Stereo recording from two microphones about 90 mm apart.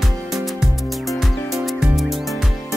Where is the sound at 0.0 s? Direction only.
Centre (ahead or behind).